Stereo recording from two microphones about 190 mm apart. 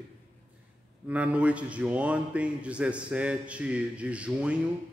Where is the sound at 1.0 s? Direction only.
5° right (ahead or behind).